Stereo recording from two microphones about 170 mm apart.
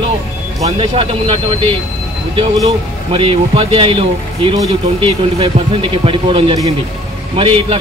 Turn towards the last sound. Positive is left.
turn(degrees=-30)  # may be behind; listen again after turning